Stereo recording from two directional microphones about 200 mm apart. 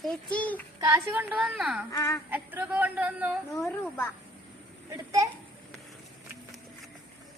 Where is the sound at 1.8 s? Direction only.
15° left (ahead or behind).